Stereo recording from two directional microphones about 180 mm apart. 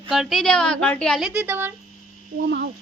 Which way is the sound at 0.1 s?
Centre (ahead or behind).